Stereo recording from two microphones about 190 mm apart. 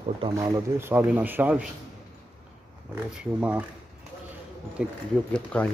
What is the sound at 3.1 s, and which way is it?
Speech, 5° right (ahead or behind).